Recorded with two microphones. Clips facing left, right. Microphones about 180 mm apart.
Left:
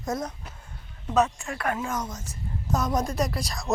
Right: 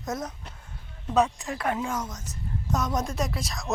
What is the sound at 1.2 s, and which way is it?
Speech, 15° right (ahead or behind).